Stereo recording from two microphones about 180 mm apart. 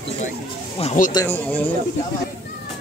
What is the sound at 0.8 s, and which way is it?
Speech, 40° left (ahead or behind).